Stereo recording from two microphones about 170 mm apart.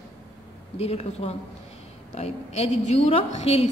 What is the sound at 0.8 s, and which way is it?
A woman's voice, 40° left (ahead or behind).